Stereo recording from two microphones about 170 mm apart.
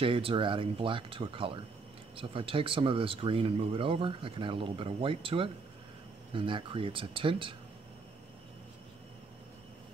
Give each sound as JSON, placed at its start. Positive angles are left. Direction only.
{"t": 0.0, "sound": "speech", "side_deg": -30}